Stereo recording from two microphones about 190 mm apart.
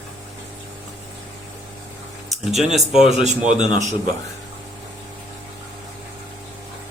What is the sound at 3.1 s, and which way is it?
Speech, 40° right (ahead or behind).